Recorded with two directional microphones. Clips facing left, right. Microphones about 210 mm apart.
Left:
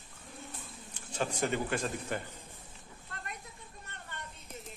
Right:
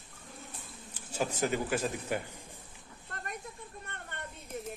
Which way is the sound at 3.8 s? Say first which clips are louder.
Right 1 dB; 55° right (ahead or behind).